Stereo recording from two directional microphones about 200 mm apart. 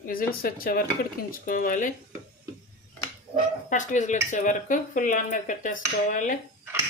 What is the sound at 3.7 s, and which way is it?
Speech, 40° left (ahead or behind).